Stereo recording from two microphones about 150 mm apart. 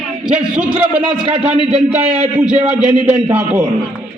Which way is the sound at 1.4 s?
40° right (ahead or behind).